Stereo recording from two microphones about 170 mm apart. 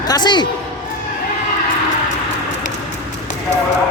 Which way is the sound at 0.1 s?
25° left (ahead or behind).